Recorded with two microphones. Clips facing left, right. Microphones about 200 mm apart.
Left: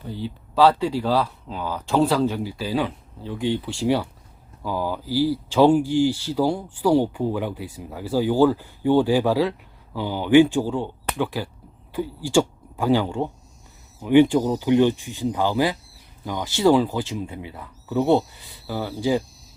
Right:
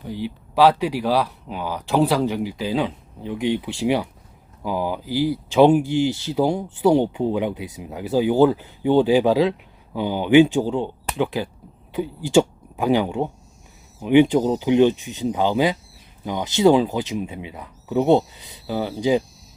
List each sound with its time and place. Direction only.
0.1 s speech: 15° right (ahead or behind)